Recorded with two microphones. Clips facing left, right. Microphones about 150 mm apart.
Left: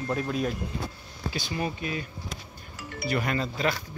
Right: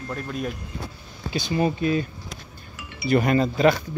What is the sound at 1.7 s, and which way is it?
Speech, 35° right (ahead or behind).